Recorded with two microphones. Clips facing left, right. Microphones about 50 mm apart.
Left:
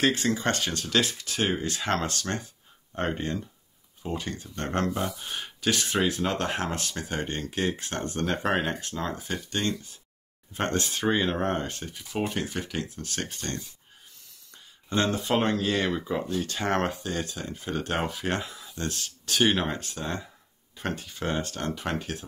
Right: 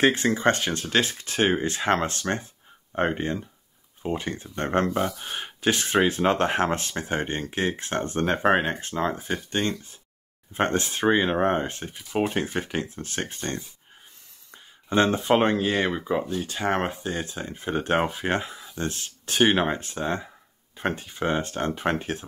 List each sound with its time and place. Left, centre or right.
0.0 s speech: right
4.9 s speech: centre
5.2 s speech: right